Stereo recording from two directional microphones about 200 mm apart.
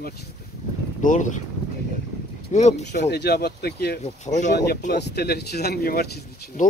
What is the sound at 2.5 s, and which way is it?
Speech, 35° left (ahead or behind).